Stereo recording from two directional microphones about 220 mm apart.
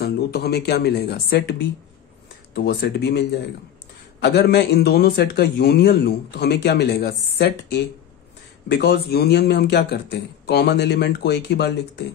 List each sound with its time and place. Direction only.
0.0 s a man's voice: 45° left (ahead or behind)